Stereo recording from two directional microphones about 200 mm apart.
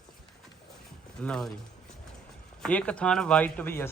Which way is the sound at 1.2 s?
5° left (ahead or behind).